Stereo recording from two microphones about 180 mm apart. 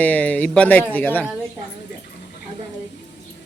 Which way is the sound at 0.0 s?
10° left (ahead or behind).